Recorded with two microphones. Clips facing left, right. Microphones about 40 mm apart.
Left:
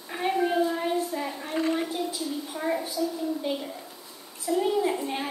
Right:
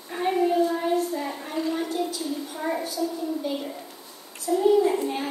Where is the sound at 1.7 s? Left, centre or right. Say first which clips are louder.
Right 1 dB; left.